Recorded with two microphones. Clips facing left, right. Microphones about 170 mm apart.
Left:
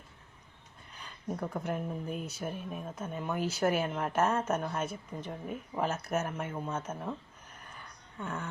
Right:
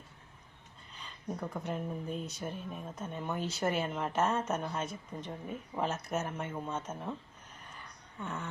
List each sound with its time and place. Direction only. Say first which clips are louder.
1.4 s speech: left 3 dB; 5° left (ahead or behind)
8.2 s speech: left 2 dB; centre (ahead or behind)